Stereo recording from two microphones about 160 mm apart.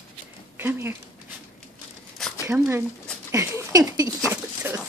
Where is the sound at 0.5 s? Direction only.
15° right (ahead or behind).